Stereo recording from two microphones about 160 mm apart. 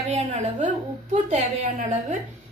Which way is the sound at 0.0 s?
45° right (ahead or behind).